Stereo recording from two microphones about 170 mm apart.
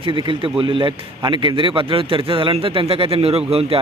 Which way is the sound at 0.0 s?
30° right (ahead or behind).